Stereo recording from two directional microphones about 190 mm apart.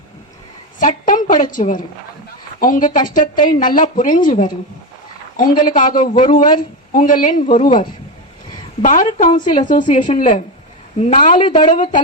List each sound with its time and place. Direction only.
0.8 s a woman's voice: 45° left (ahead or behind)
9.4 s a woman's voice: 25° left (ahead or behind)
9.6 s a woman's voice: 40° left (ahead or behind)